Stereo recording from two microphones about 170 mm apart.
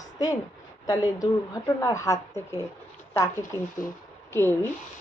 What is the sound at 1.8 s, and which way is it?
Speech, 20° left (ahead or behind).